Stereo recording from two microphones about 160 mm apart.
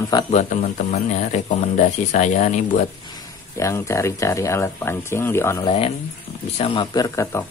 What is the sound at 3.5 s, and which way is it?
Speech, 20° left (ahead or behind).